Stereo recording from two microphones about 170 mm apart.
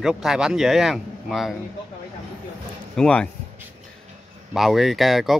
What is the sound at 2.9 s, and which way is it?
Speech, 5° left (ahead or behind).